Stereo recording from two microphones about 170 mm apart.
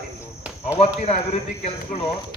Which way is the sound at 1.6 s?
35° left (ahead or behind).